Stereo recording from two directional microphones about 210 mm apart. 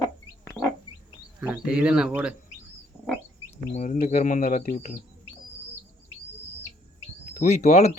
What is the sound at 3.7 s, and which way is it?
Speech, 35° left (ahead or behind).